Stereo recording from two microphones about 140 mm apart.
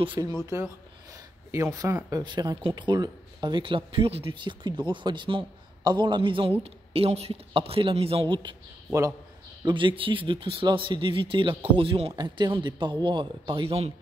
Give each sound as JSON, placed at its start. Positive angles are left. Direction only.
{"t": 0.0, "sound": "speech", "side_deg": -30}
{"t": 1.1, "sound": "a sound", "side_deg": -25}
{"t": 2.0, "sound": "a man's voice", "side_deg": -30}
{"t": 9.7, "sound": "speech", "side_deg": -35}